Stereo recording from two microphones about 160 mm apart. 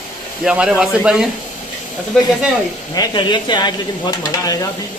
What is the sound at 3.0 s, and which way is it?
Speech, 25° left (ahead or behind).